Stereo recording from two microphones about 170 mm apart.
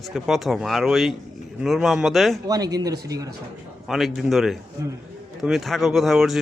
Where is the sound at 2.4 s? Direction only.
20° right (ahead or behind).